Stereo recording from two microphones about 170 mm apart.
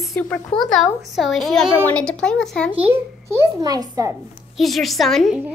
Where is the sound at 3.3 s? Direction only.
20° right (ahead or behind).